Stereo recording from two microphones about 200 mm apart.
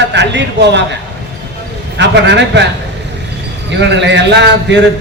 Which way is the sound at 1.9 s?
60° right (ahead or behind).